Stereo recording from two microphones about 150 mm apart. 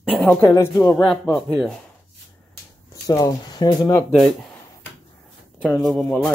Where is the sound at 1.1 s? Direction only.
5° left (ahead or behind).